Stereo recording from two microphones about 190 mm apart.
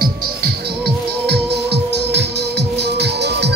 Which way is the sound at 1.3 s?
60° right (ahead or behind).